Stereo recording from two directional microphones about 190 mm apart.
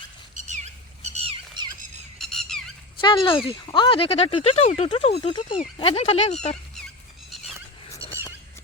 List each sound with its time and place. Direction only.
0.3 s squawk: 40° right (ahead or behind)
2.1 s squawk: centre (ahead or behind)
3.0 s speech: 25° left (ahead or behind)
7.9 s a sound: 15° right (ahead or behind)